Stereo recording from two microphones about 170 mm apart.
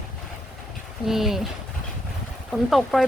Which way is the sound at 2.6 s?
Centre (ahead or behind).